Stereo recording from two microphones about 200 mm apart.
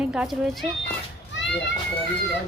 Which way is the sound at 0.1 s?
5° right (ahead or behind).